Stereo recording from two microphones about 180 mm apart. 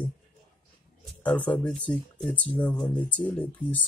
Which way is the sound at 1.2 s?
10° left (ahead or behind).